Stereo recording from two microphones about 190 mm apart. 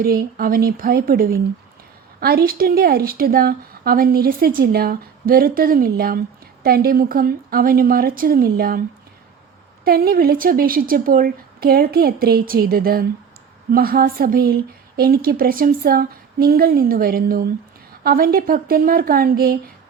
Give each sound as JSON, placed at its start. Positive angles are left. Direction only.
{"t": 0.0, "sound": "a woman's voice", "side_deg": -50}
{"t": 9.8, "sound": "a woman's voice", "side_deg": -55}